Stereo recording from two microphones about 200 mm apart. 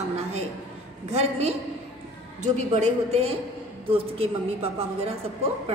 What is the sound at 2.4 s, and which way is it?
A woman's voice, 35° right (ahead or behind).